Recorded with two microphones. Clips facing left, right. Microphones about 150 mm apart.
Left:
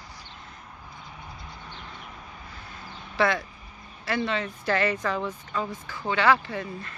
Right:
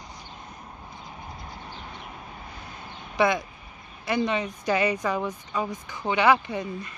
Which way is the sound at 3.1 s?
15° right (ahead or behind).